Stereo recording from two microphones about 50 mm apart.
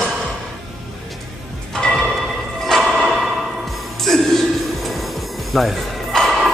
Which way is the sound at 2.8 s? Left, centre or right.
Centre.